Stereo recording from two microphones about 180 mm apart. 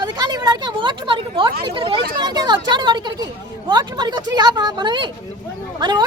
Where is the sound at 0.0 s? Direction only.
25° right (ahead or behind).